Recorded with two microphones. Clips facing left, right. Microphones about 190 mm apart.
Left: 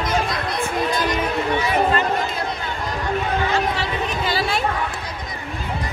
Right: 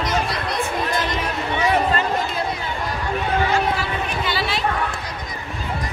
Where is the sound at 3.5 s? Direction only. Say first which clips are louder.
Even; 40° left (ahead or behind).